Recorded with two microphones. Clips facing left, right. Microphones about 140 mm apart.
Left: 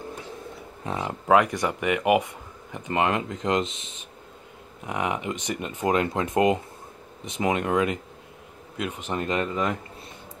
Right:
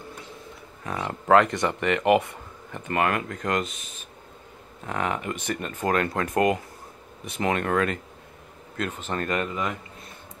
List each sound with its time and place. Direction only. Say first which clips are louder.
0.8 s speech: left 1 dB; 25° left (ahead or behind)
1.2 s speech: right 1 dB; 10° left (ahead or behind)